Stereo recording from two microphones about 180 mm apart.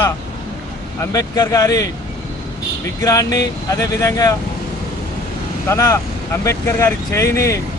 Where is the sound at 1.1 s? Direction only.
20° left (ahead or behind).